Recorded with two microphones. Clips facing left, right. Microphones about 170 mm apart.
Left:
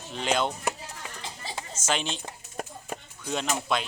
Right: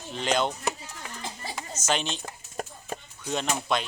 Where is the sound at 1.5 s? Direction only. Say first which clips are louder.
Right 1 dB; 25° left (ahead or behind).